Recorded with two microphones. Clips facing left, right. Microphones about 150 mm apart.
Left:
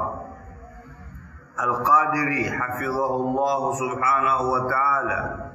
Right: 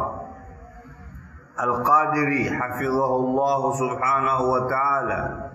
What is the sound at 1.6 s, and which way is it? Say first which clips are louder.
A man's voice: right 1 dB; 30° right (ahead or behind).